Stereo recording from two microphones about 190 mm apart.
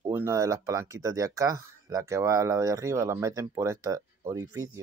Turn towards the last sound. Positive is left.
turn(degrees=-15)  # may be behind; listen again after turning